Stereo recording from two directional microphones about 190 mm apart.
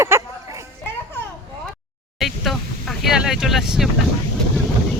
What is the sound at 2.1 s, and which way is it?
Vehicle, centre (ahead or behind).